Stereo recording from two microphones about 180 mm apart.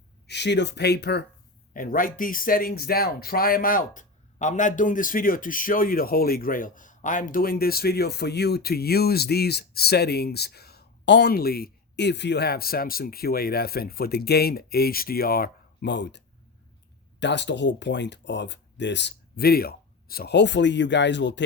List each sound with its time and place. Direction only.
0.3 s speech: 70° left (ahead or behind)
1.7 s speech: 50° left (ahead or behind); by 21.4 s 80° left